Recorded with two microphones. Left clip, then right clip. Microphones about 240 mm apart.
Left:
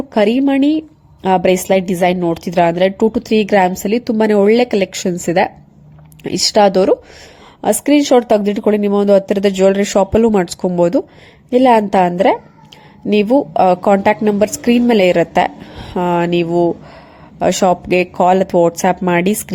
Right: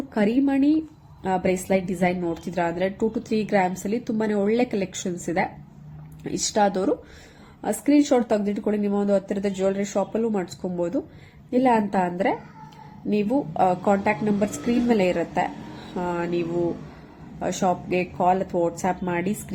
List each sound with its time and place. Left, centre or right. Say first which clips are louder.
0.1 s a woman's voice: left 10 dB; left